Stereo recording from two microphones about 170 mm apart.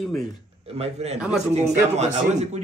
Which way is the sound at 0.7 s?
35° right (ahead or behind).